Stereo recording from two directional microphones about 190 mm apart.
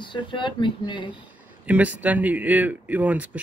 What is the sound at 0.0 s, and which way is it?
Speech, 25° left (ahead or behind).